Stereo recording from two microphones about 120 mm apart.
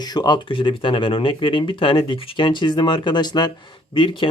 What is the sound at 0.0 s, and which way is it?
Speech, 35° left (ahead or behind).